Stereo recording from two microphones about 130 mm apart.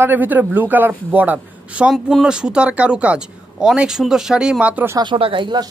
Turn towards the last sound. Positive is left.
turn(degrees=-35)  # may be behind; listen again after turning